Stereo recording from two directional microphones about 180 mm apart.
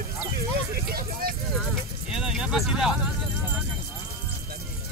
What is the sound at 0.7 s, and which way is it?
Vehicle, 55° right (ahead or behind).